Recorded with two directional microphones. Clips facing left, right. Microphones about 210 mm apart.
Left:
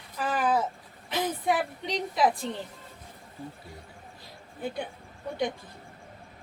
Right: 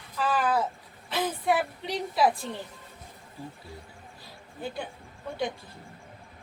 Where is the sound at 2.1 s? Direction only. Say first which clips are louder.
Right 1 dB; 20° left (ahead or behind).